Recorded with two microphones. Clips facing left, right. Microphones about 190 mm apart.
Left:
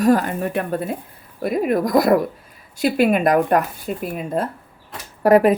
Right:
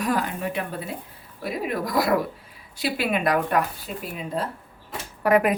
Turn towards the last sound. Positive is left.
turn(degrees=35)  # may be behind; listen again after turning